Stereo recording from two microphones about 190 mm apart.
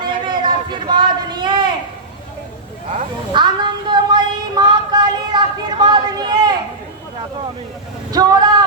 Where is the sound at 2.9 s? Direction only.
25° right (ahead or behind).